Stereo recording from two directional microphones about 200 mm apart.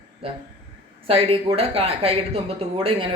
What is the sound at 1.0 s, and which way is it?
Speech, 30° right (ahead or behind).